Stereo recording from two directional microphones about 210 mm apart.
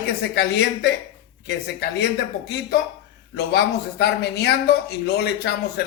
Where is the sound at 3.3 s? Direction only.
50° left (ahead or behind).